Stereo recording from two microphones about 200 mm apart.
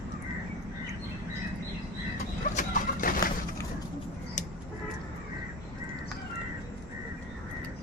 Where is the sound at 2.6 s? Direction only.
45° left (ahead or behind).